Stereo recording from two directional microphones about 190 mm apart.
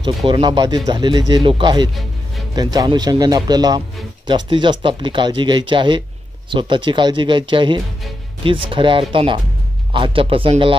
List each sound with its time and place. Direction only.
0.0 s speech: 25° right (ahead or behind)